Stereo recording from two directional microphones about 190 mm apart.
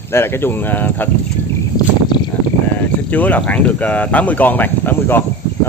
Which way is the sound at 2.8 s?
10° left (ahead or behind).